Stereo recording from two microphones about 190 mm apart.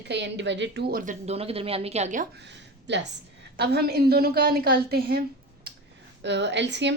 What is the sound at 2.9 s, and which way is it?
A woman's voice, 65° right (ahead or behind).